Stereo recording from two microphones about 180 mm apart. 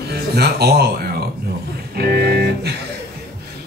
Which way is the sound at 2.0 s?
60° right (ahead or behind).